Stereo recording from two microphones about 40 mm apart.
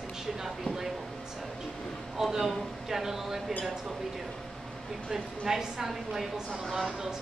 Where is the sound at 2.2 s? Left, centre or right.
Centre.